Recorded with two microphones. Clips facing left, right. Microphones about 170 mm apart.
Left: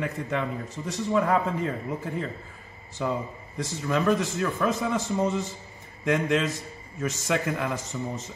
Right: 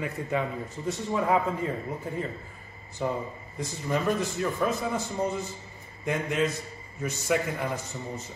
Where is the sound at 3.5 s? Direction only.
90° left.